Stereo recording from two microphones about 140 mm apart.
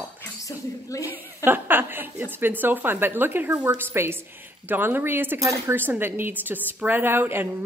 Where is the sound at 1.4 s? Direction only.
15° right (ahead or behind).